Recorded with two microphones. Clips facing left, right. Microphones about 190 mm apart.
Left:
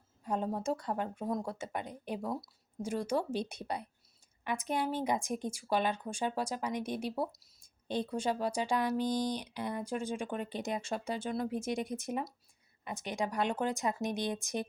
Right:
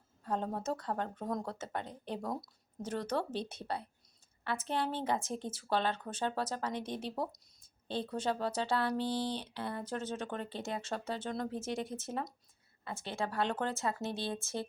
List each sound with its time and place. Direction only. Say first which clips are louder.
0.3 s a woman's voice: left 2 dB; 10° left (ahead or behind)